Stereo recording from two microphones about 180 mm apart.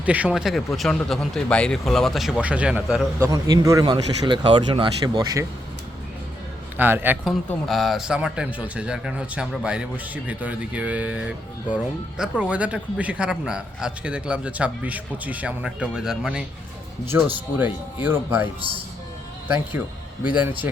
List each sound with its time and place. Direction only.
0.0 s speech: 10° right (ahead or behind)
3.2 s speech: 20° right (ahead or behind)
6.7 s a man's voice: 10° right (ahead or behind)
7.7 s a man's voice: centre (ahead or behind)
20.2 s a man's voice: 10° right (ahead or behind)